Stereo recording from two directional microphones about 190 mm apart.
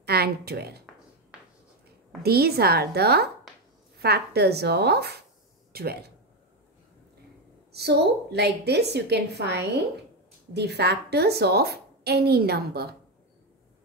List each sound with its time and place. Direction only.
0.0 s a woman's voice: 55° right (ahead or behind)
2.2 s a woman's voice: 55° right (ahead or behind)
7.7 s a woman's voice: 60° right (ahead or behind)